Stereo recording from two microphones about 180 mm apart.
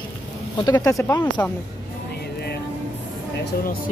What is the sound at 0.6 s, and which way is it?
Speech, 20° left (ahead or behind).